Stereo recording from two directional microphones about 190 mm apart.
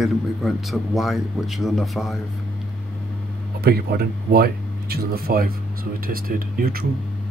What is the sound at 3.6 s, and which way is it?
Speech, 55° right (ahead or behind).